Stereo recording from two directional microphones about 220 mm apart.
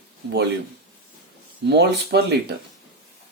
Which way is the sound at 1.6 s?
50° right (ahead or behind).